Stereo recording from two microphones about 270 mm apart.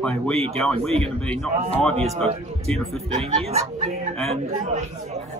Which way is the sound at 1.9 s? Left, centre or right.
Right.